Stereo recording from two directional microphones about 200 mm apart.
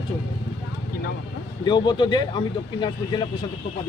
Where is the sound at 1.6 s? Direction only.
20° left (ahead or behind).